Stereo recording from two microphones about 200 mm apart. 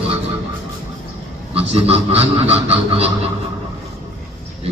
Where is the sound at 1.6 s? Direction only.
30° right (ahead or behind).